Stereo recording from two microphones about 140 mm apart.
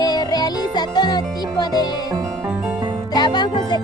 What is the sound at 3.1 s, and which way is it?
Music, 30° left (ahead or behind).